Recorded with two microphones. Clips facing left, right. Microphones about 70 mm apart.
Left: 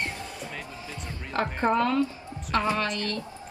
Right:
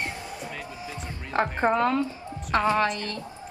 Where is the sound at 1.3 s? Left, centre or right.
Right.